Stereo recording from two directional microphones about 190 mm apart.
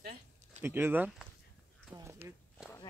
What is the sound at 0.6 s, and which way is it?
Speech, 10° right (ahead or behind).